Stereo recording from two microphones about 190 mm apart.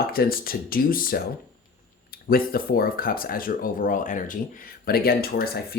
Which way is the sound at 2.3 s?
50° left (ahead or behind).